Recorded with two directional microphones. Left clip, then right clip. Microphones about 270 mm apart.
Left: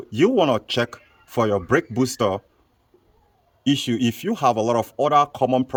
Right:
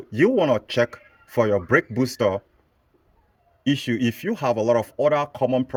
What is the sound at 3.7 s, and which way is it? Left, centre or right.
Speech, centre.